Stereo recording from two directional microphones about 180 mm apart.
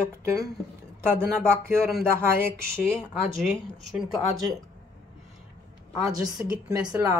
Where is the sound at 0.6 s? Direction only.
Centre (ahead or behind).